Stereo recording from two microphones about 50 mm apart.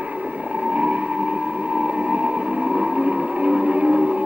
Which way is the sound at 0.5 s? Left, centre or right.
Right.